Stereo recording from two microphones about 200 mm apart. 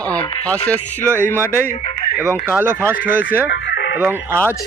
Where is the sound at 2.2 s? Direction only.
10° right (ahead or behind).